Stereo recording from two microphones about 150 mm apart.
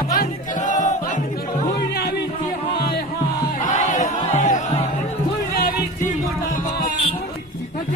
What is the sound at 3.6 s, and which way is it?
Music, 60° left (ahead or behind).